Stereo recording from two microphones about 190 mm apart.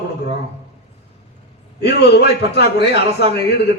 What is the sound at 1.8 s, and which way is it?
A man's voice, 60° left (ahead or behind).